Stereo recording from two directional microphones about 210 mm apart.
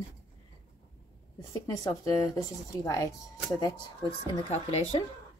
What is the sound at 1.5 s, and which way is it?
Speech, 15° left (ahead or behind).